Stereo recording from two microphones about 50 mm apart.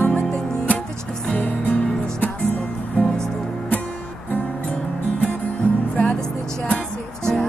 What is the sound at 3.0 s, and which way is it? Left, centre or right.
Music, centre.